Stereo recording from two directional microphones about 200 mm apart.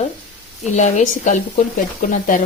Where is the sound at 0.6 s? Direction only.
35° left (ahead or behind).